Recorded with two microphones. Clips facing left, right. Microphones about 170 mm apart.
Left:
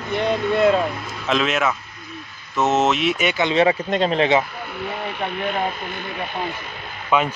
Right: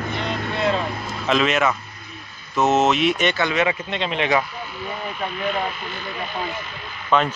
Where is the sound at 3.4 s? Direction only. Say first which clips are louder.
Left 4 dB; 30° left (ahead or behind).